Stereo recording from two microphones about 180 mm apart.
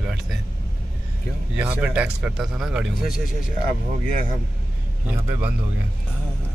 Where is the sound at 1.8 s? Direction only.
5° right (ahead or behind).